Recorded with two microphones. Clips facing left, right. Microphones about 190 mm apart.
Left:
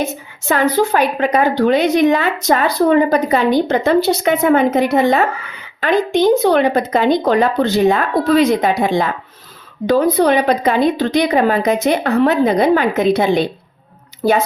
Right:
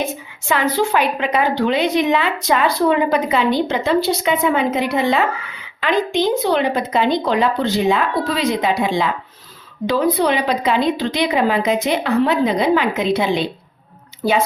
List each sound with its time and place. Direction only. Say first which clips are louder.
0.0 s a woman's voice: left 2 dB; 40° left (ahead or behind)